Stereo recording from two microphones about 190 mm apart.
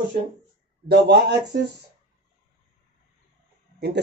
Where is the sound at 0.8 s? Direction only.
60° right (ahead or behind).